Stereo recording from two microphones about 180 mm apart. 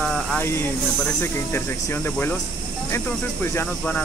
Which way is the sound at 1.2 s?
15° left (ahead or behind).